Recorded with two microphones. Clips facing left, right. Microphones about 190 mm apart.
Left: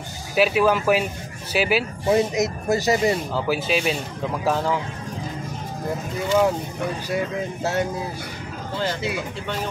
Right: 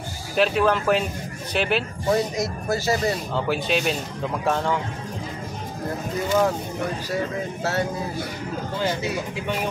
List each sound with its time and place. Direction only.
0.4 s speech: 5° left (ahead or behind)
2.3 s speech: 20° left (ahead or behind)
3.3 s speech: 5° left (ahead or behind)
7.1 s speech: 15° left (ahead or behind)